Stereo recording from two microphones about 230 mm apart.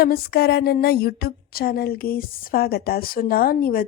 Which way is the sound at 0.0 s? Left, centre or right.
Left.